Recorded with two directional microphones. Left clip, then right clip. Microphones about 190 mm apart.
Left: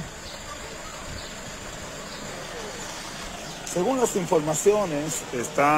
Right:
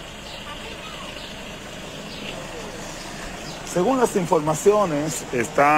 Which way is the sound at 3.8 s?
Centre (ahead or behind).